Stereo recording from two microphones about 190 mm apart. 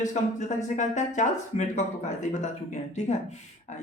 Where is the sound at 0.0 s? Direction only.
40° left (ahead or behind).